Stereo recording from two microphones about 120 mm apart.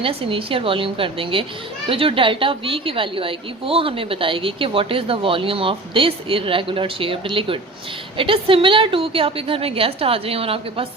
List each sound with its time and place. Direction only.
0.0 s a woman's voice: 50° right (ahead or behind)